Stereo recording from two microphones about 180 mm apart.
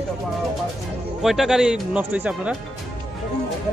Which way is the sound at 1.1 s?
Centre (ahead or behind).